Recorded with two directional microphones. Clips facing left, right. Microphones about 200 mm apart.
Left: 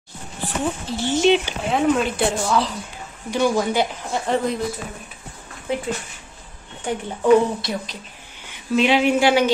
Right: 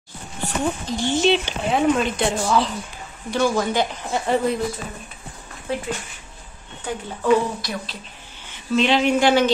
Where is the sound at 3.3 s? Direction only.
15° left (ahead or behind).